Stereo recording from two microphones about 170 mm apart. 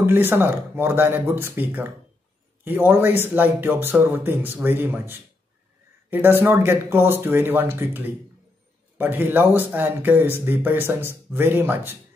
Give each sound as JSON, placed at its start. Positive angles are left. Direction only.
{"t": 0.0, "sound": "speech", "side_deg": -10}